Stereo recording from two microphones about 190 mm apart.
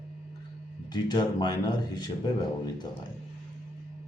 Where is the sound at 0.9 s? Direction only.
20° left (ahead or behind).